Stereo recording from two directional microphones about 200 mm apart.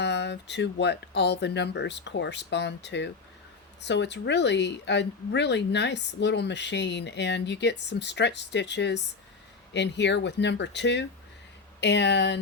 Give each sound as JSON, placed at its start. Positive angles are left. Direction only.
{"t": 0.0, "sound": "speech", "side_deg": 60}